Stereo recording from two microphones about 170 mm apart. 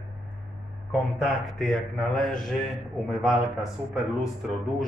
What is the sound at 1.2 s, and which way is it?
Speech, centre (ahead or behind).